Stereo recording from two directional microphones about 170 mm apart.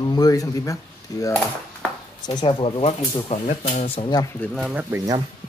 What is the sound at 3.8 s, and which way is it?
Speech, 35° left (ahead or behind).